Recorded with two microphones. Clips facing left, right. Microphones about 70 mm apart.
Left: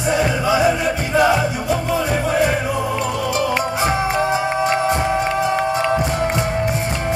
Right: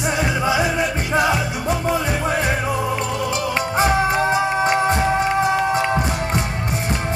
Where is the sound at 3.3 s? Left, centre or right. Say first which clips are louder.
Left 3 dB; left.